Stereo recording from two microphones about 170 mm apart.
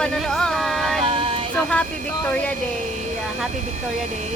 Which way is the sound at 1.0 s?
30° right (ahead or behind).